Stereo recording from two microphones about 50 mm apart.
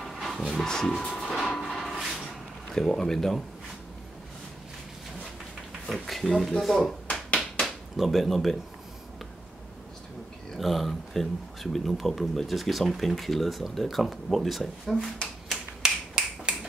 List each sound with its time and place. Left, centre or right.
0.0 s music: centre
0.5 s speech: centre
1.5 s a sound: centre
2.7 s speech: centre
5.9 s speech: centre
7.1 s a sound: left
7.5 s a sound: centre
10.6 s speech: centre
15.5 s finger snapping: centre